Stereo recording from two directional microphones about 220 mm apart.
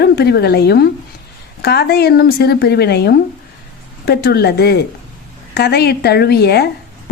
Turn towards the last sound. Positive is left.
turn(degrees=45)  # may be behind; listen again after turning